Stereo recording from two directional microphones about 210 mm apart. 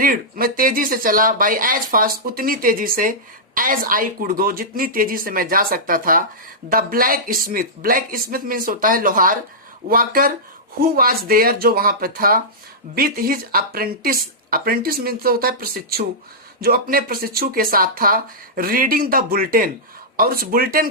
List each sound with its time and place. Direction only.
0.0 s speech: 45° right (ahead or behind)